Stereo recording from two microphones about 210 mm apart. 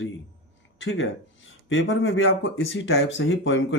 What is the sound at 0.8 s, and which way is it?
Speech, 65° left (ahead or behind).